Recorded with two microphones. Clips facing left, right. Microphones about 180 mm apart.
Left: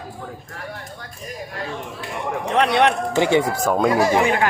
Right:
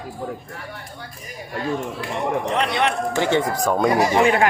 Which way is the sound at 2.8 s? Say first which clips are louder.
Left 3 dB; 15° left (ahead or behind).